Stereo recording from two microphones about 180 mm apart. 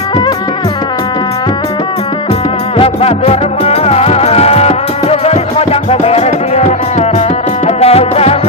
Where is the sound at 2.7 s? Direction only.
35° left (ahead or behind).